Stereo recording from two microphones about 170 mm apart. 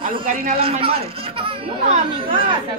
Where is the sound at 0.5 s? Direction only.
35° right (ahead or behind).